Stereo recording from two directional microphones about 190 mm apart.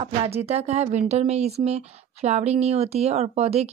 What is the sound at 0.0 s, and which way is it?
Speech, 30° right (ahead or behind).